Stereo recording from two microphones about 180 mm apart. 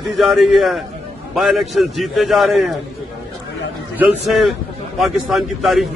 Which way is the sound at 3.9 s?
Centre (ahead or behind).